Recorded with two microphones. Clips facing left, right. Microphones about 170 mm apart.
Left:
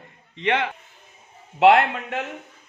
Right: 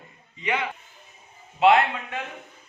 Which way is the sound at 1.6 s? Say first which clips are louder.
Left 3 dB; 70° left (ahead or behind).